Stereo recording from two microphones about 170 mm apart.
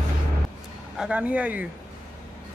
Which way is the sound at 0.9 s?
5° right (ahead or behind).